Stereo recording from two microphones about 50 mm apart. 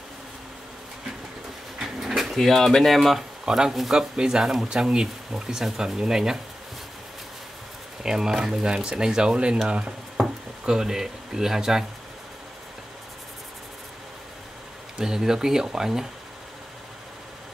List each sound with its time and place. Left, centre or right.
1.8 s drawer open or close: centre
3.4 s speech: centre
8.0 s speech: centre
10.2 s a sound: centre
10.7 s speech: centre
15.0 s speech: centre